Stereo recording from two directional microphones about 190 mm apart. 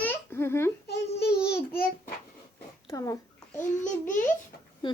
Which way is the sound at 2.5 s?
15° left (ahead or behind).